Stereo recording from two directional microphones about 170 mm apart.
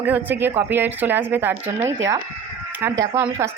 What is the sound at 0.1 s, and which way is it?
A woman's voice, 10° right (ahead or behind).